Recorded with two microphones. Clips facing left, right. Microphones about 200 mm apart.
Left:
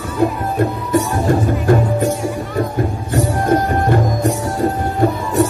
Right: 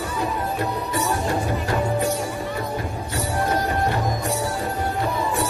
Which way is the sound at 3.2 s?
50° left (ahead or behind).